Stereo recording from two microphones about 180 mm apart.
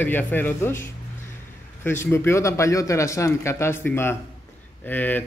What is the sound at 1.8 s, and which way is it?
Speech, 15° left (ahead or behind).